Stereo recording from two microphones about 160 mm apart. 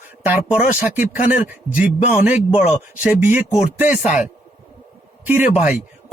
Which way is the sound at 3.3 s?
50° left (ahead or behind).